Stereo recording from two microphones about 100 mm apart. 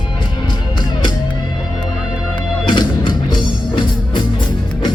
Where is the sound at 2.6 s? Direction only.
50° left (ahead or behind).